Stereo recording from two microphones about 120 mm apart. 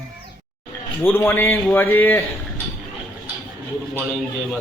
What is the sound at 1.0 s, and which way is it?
A man's voice, 20° left (ahead or behind).